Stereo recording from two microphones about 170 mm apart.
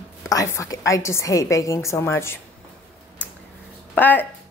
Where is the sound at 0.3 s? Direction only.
15° left (ahead or behind).